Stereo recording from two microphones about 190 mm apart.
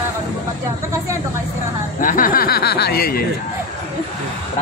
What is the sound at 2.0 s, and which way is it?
Speech, 45° left (ahead or behind).